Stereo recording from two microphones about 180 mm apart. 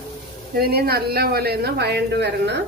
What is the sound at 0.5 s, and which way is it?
Speech, 60° right (ahead or behind).